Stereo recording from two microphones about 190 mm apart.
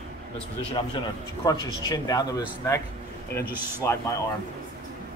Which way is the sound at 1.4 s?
20° left (ahead or behind).